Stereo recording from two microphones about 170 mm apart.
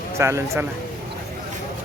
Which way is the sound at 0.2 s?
15° right (ahead or behind).